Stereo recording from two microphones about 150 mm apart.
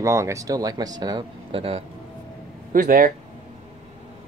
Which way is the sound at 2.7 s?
65° right (ahead or behind).